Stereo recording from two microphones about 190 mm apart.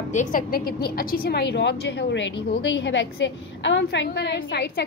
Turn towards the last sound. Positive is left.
turn(degrees=60)  # may be behind; listen again after turning